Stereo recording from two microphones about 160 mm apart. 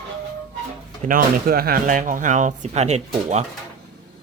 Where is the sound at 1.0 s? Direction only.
65° right (ahead or behind); by 3.0 s 45° right (ahead or behind).